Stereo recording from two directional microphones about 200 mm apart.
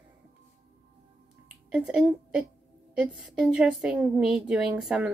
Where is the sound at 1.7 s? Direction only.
5° right (ahead or behind).